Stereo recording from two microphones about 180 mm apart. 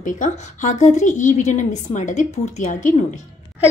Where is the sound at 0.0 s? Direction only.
45° left (ahead or behind).